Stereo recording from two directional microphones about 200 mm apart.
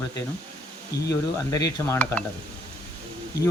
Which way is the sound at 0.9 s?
55° left (ahead or behind).